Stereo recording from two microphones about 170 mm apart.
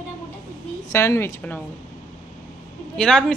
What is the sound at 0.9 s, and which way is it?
Speech, 15° left (ahead or behind).